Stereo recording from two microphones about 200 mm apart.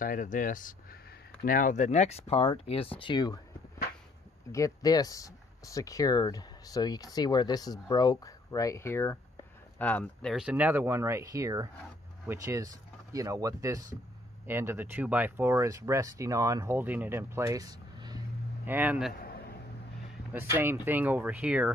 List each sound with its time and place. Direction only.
0.0 s speech: 40° left (ahead or behind); by 3.3 s 20° left (ahead or behind)
4.5 s speech: 15° left (ahead or behind); by 18.2 s 20° right (ahead or behind)
18.7 s speech: 10° right (ahead or behind)
19.1 s a sound: 50° left (ahead or behind)
20.3 s speech: 10° right (ahead or behind)